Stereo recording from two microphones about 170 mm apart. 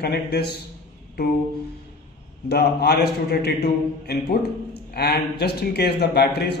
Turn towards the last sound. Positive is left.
turn(degrees=75)  # may be behind; listen again after turning